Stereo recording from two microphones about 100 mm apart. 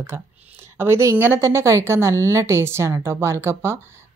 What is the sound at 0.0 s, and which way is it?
Speech, 25° right (ahead or behind).